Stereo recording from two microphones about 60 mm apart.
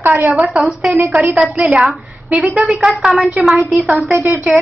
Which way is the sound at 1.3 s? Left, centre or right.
Centre.